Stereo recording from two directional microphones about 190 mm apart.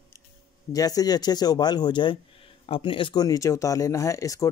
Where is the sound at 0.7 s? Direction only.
20° left (ahead or behind).